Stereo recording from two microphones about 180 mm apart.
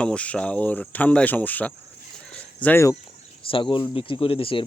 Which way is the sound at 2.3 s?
10° left (ahead or behind).